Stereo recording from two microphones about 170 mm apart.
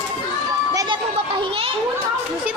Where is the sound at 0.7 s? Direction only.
30° right (ahead or behind).